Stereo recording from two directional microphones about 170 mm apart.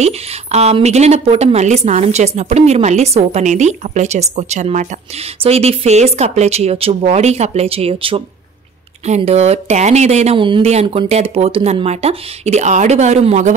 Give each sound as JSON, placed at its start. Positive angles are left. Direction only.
{"t": 0.0, "sound": "a woman's voice", "side_deg": -40}